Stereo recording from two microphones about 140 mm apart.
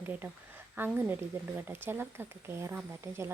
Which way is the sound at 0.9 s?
15° right (ahead or behind).